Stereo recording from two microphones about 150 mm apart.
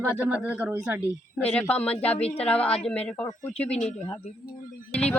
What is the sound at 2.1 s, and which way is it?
Speech, 45° left (ahead or behind).